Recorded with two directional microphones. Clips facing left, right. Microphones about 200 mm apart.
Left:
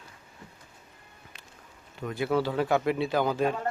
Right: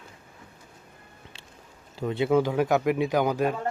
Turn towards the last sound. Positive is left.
turn(degrees=-15)  # may be behind; listen again after turning